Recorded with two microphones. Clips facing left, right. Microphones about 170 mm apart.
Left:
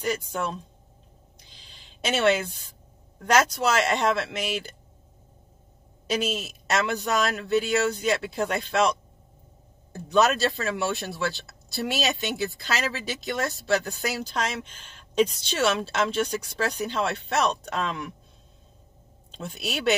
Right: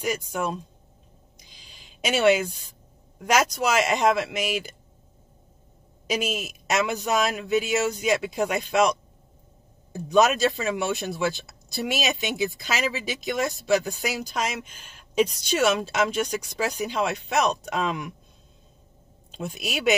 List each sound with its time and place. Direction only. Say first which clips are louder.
0.0 s speech: right 1 dB; 10° right (ahead or behind)
1.5 s a sound: right 1 dB; 10° right (ahead or behind)
3.3 s speech: even; 10° right (ahead or behind)
6.0 s speech: even; 10° right (ahead or behind)
9.9 s speech: right 2 dB; 15° right (ahead or behind)
19.3 s speech: right 1 dB; 10° right (ahead or behind)